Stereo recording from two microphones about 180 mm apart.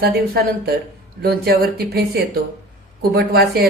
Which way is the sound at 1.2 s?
60° right (ahead or behind).